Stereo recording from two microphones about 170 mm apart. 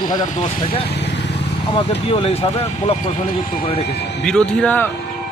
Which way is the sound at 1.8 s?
35° left (ahead or behind).